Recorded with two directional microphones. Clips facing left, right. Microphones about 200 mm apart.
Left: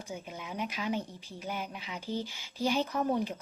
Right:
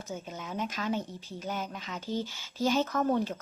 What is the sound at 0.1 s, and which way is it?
Speech, 10° left (ahead or behind).